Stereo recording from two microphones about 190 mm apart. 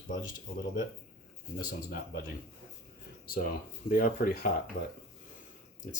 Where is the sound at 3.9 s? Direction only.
50° left (ahead or behind).